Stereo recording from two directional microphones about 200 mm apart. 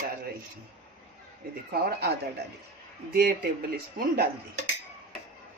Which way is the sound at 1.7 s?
50° right (ahead or behind).